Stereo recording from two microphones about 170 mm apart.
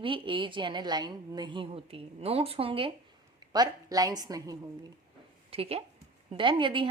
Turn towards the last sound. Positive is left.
turn(degrees=-30)  # may be behind; listen again after turning